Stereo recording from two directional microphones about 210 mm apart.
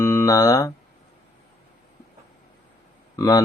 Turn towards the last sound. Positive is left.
turn(degrees=15)  # may be behind; listen again after turning